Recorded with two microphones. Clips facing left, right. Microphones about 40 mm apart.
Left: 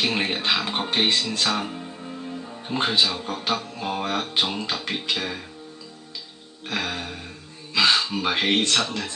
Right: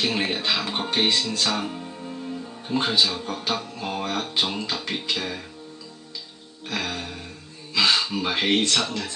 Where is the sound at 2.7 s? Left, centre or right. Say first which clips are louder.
Even; left.